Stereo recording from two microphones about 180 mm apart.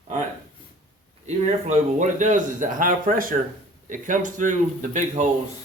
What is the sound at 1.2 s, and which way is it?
A man's voice, 40° right (ahead or behind).